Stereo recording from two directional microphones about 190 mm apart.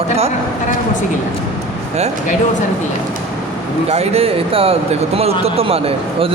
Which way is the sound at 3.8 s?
30° right (ahead or behind).